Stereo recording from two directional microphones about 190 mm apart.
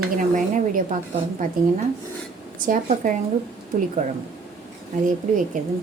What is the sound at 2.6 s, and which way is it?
Speech, 45° right (ahead or behind).